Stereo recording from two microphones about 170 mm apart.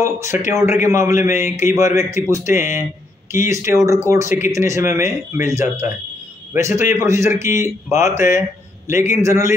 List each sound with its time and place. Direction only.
0.0 s a man's voice: 15° right (ahead or behind)